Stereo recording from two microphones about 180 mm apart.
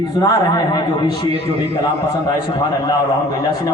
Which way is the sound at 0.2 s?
20° left (ahead or behind).